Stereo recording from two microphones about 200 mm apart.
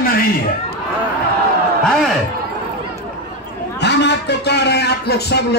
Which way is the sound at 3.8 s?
60° left (ahead or behind).